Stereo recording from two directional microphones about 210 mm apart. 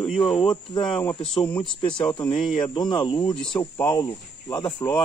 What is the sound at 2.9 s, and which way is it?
Speech, 20° left (ahead or behind).